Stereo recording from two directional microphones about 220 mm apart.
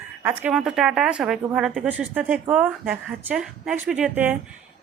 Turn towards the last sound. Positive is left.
turn(degrees=-5)  # may be behind; listen again after turning